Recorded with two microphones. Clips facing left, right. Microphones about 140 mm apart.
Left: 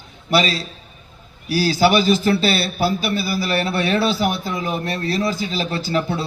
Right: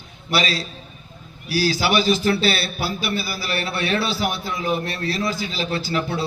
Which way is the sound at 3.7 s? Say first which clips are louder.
Left 1 dB; 45° left (ahead or behind).